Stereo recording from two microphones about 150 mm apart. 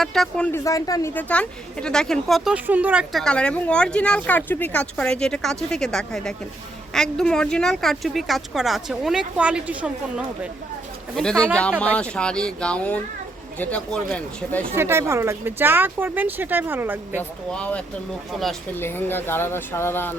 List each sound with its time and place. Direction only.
0.0 s speech: centre (ahead or behind)
0.5 s speech: 20° left (ahead or behind)
1.1 s speech: 10° left (ahead or behind)
11.2 s speech: 5° left (ahead or behind)
14.8 s speech: 15° right (ahead or behind)
17.5 s speech: 5° left (ahead or behind)